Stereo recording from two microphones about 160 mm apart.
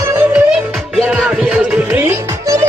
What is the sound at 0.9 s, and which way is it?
Music, 5° right (ahead or behind).